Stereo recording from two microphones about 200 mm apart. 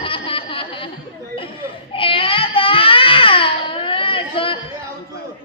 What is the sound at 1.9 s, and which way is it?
Baby cry, 25° left (ahead or behind).